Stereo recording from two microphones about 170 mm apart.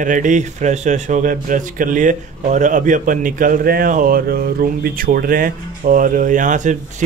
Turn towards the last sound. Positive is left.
turn(degrees=-45)  # may be behind; listen again after turning